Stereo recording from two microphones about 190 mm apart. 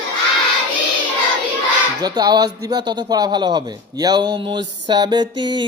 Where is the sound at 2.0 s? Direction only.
20° right (ahead or behind).